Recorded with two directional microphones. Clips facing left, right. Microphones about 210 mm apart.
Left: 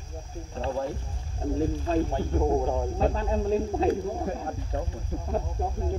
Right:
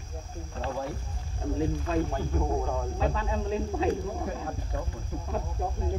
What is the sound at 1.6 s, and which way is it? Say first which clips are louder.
Speech: left 2 dB; 35° left (ahead or behind).